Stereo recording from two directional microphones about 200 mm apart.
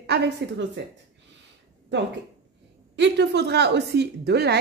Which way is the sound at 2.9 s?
60° right (ahead or behind).